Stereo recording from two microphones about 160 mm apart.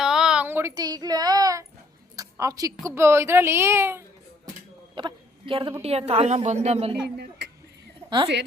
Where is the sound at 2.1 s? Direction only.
20° right (ahead or behind).